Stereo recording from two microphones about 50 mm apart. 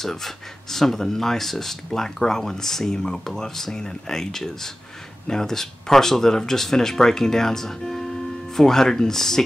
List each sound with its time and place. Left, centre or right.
0.0 s speech: centre